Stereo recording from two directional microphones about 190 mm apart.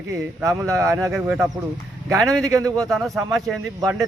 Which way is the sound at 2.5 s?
20° right (ahead or behind).